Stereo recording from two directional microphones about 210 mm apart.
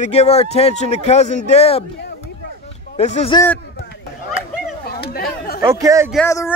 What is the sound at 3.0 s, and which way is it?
Speech, 30° left (ahead or behind).